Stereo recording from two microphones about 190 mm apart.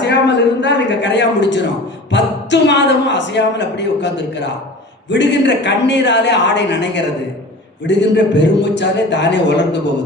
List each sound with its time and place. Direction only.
0.0 s a man's voice: 65° left (ahead or behind)